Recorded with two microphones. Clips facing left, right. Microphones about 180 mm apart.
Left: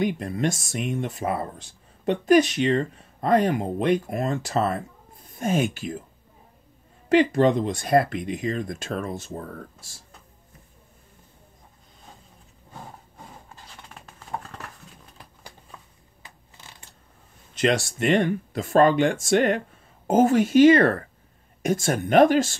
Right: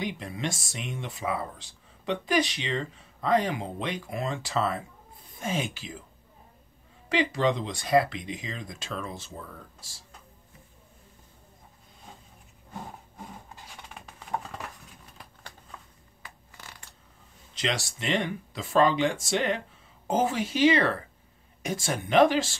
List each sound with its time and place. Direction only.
0.0 s speech: 50° left (ahead or behind)
7.1 s speech: 50° left (ahead or behind)
17.6 s speech: 55° left (ahead or behind)